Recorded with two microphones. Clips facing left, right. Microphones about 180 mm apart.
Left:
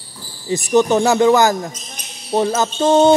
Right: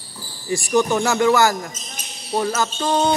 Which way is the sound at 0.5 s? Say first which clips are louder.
Left 4 dB; 20° left (ahead or behind).